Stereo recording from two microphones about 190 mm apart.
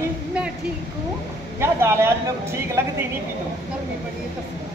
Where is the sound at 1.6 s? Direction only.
15° right (ahead or behind).